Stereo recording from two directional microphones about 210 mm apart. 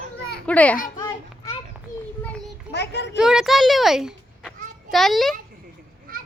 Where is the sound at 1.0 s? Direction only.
20° left (ahead or behind).